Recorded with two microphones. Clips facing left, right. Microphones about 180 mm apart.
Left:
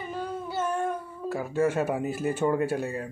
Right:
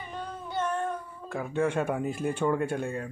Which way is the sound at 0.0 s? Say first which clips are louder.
Left 5 dB; 5° left (ahead or behind).